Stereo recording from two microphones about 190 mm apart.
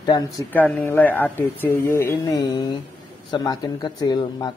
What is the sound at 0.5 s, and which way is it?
Speech, 10° left (ahead or behind).